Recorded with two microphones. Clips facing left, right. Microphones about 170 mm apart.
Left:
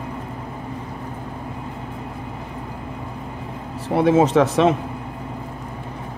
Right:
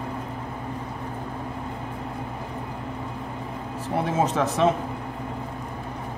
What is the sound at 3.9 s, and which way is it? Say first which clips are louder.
Speech: left 9 dB; 80° left.